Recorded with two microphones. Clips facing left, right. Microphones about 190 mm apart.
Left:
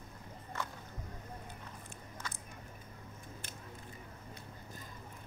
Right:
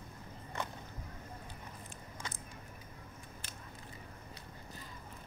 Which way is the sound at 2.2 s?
20° right (ahead or behind).